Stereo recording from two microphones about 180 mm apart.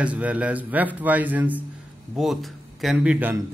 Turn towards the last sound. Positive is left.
turn(degrees=-10)  # may be behind; listen again after turning